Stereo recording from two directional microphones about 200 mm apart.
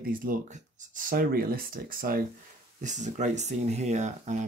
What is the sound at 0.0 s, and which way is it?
Speech, 45° right (ahead or behind).